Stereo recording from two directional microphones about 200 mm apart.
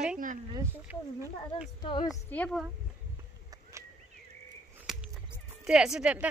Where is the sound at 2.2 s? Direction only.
5° left (ahead or behind).